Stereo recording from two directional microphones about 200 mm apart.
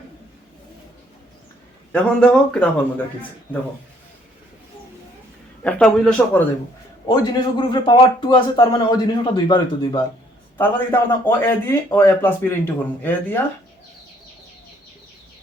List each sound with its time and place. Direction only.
1.9 s speech: 5° left (ahead or behind)
5.6 s speech: 5° left (ahead or behind)
7.1 s a man's voice: 25° left (ahead or behind)
10.6 s speech: 10° left (ahead or behind)